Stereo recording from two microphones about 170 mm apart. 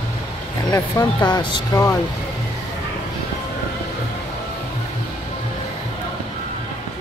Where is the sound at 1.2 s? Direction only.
25° left (ahead or behind).